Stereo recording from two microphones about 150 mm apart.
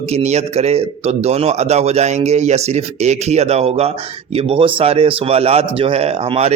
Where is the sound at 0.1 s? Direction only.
45° right (ahead or behind).